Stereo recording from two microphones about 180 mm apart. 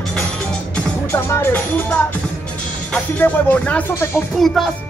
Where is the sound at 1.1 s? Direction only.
15° left (ahead or behind).